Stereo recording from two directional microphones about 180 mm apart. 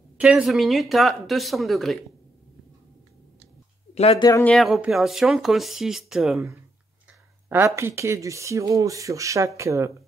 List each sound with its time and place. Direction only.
0.2 s speech: 5° right (ahead or behind)
3.9 s speech: 35° left (ahead or behind)
4.2 s speech: 20° left (ahead or behind)
4.5 s speech: centre (ahead or behind)
7.4 s speech: 15° right (ahead or behind)